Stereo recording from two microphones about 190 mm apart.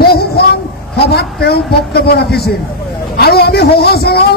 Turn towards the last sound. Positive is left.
turn(degrees=55)  # may be behind; listen again after turning